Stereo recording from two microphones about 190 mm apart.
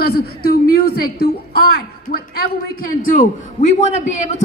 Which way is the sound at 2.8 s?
45° left (ahead or behind).